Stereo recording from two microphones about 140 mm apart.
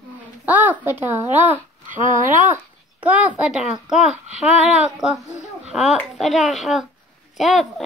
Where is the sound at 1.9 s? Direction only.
70° right (ahead or behind).